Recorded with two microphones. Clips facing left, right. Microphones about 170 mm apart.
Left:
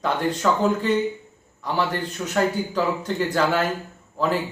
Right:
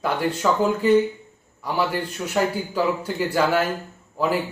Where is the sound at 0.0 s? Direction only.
10° right (ahead or behind).